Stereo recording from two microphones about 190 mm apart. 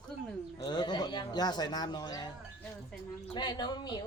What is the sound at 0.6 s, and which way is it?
Speech, 20° left (ahead or behind).